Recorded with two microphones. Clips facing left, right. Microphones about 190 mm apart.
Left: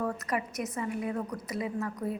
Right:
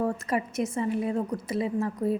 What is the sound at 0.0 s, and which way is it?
A woman's voice, 25° right (ahead or behind).